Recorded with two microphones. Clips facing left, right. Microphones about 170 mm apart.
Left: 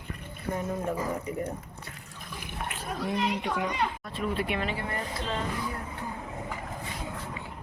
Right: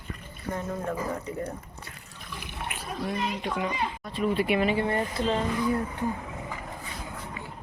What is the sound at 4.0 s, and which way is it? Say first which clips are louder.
Speech: right 4 dB; centre (ahead or behind).